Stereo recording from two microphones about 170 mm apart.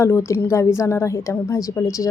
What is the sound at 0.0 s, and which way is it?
Speech, 15° left (ahead or behind).